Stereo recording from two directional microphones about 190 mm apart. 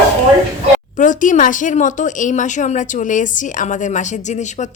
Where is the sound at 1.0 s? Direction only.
40° left (ahead or behind).